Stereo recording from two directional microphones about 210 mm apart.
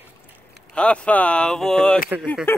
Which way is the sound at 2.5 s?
10° left (ahead or behind).